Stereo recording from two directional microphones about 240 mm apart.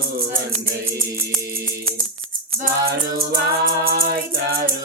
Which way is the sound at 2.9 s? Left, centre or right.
Right.